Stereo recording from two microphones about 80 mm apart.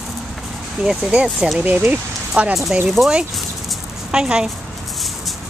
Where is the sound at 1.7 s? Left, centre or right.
Right.